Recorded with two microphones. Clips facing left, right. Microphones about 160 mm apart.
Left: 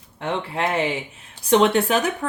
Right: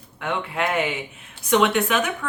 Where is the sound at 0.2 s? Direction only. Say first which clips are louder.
Left 1 dB; 30° left (ahead or behind).